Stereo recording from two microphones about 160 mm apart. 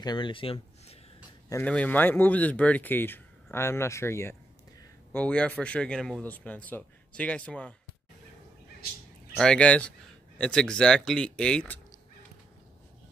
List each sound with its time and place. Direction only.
0.0 s speech: 30° left (ahead or behind)
1.6 s speech: 10° left (ahead or behind)
9.4 s speech: 5° left (ahead or behind)